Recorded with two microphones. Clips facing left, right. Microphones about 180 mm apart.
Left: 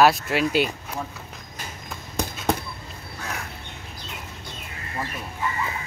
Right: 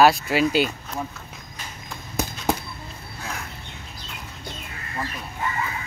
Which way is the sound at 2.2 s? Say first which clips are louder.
Even; 5° right (ahead or behind).